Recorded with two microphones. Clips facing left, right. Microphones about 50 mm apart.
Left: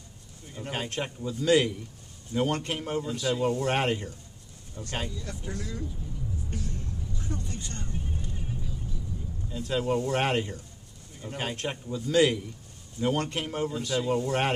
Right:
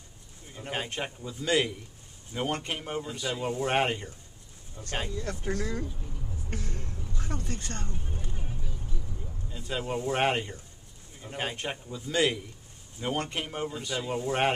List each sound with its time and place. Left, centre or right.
0.6 s a man's voice: centre
5.1 s speech: right
6.5 s music: right
9.5 s speech: centre